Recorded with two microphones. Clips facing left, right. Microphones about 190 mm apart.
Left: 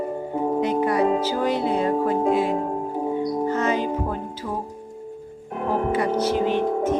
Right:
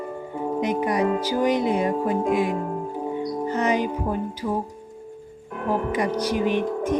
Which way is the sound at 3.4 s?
15° right (ahead or behind).